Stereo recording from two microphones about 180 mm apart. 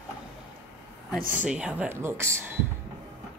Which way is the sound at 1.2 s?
45° right (ahead or behind).